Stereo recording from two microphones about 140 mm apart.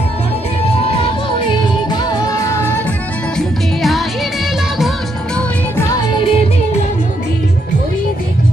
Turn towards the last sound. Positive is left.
turn(degrees=45)  # may be behind; listen again after turning